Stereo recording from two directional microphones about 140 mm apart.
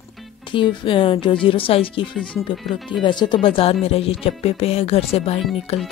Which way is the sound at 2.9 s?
35° left (ahead or behind).